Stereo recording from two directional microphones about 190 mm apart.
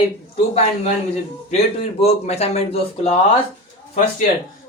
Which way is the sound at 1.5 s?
35° left (ahead or behind).